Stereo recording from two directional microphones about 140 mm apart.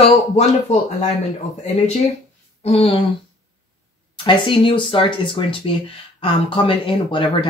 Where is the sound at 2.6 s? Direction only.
50° left (ahead or behind).